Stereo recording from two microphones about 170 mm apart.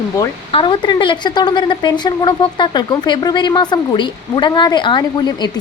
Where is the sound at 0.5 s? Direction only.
30° left (ahead or behind).